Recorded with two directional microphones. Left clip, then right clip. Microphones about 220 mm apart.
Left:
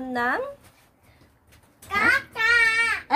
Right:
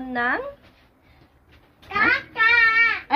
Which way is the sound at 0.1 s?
Centre (ahead or behind).